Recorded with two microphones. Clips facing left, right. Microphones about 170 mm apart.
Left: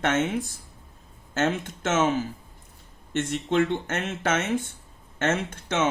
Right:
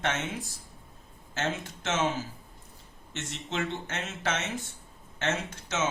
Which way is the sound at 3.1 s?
55° left (ahead or behind).